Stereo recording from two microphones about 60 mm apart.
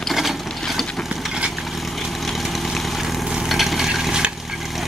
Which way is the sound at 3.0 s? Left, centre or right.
Centre.